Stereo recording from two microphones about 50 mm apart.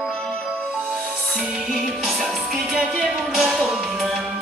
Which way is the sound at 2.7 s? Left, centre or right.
Centre.